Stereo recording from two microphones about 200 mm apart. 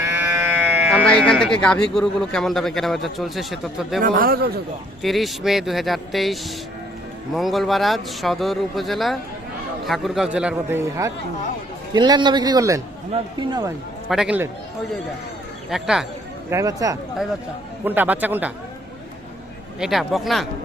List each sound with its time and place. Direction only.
0.0 s sheep: 10° right (ahead or behind)
1.0 s a man's voice: 5° left (ahead or behind)
4.0 s a man's voice: 45° right (ahead or behind)
5.0 s a man's voice: centre (ahead or behind); by 13.7 s 20° right (ahead or behind)
14.1 s a man's voice: 5° right (ahead or behind)
15.7 s a man's voice: centre (ahead or behind)
16.5 s speech: 15° right (ahead or behind)
19.8 s a man's voice: centre (ahead or behind)